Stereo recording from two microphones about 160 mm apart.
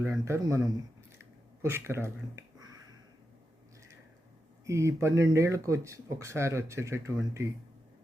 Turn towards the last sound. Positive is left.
turn(degrees=-20)  # may be behind; listen again after turning